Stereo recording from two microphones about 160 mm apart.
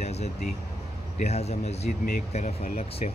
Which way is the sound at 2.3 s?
55° left (ahead or behind).